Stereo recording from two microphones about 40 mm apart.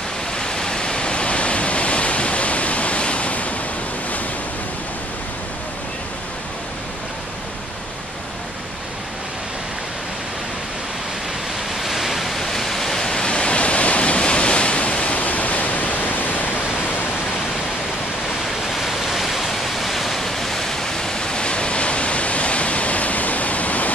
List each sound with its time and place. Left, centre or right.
0.4 s pink noise: centre; by 3.5 s left
11.8 s pink noise: centre; by 16.4 s left
18.8 s waterfall: centre; by 23.9 s left